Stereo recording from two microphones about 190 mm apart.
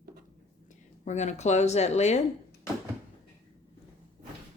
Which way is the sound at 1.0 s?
35° left (ahead or behind).